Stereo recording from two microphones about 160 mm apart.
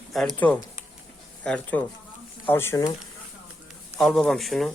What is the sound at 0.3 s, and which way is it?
A man's voice, 10° left (ahead or behind).